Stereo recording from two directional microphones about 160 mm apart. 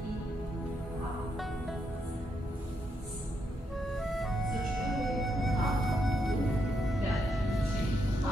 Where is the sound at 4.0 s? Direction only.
Centre (ahead or behind).